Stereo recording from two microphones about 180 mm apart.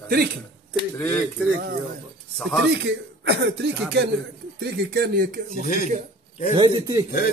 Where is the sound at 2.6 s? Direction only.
70° right (ahead or behind); by 5.6 s 50° right (ahead or behind).